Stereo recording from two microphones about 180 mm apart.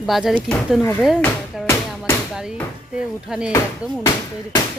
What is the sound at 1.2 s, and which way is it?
Music, 10° left (ahead or behind).